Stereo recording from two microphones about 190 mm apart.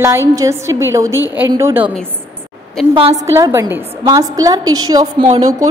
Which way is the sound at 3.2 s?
15° right (ahead or behind).